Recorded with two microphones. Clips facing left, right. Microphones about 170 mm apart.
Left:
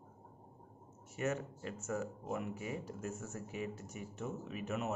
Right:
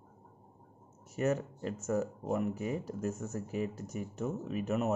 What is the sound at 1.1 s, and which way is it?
Speech, 40° right (ahead or behind).